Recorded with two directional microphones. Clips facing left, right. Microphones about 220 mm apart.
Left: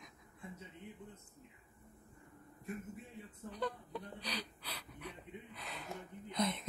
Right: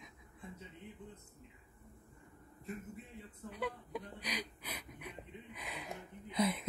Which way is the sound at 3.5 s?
10° right (ahead or behind).